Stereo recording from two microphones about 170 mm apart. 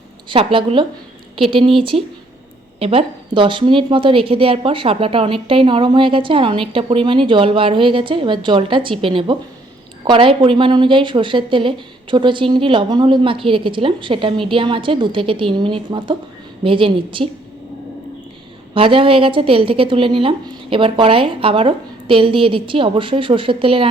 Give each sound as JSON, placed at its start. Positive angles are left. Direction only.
{"t": 0.3, "sound": "a woman's voice", "side_deg": -30}
{"t": 18.7, "sound": "a woman's voice", "side_deg": -30}